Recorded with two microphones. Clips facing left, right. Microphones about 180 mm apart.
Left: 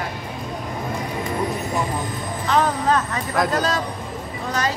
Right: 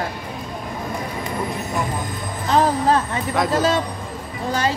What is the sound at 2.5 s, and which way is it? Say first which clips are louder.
Speech: right 2 dB; 35° right (ahead or behind).